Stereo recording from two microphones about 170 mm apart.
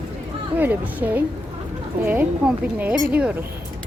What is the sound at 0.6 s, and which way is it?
Speech, 10° right (ahead or behind).